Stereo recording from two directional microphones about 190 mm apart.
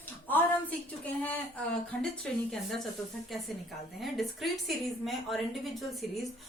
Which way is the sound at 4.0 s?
Centre (ahead or behind).